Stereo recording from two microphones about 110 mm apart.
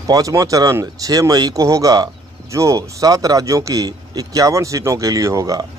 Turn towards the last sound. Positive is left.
turn(degrees=-30)  # may be behind; listen again after turning